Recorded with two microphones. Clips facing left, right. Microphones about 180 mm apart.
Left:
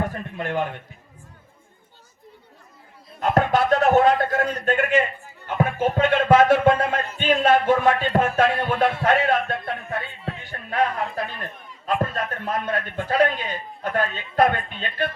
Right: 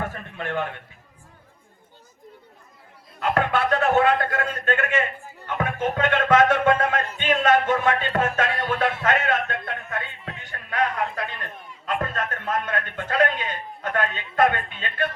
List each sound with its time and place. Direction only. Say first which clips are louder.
0.0 s a sound: left 3 dB; 40° left (ahead or behind)
3.2 s music: left 3 dB; 40° left (ahead or behind)
8.7 s speech: left 3 dB; 30° left (ahead or behind)
11.9 s music: left 3 dB; 35° left (ahead or behind)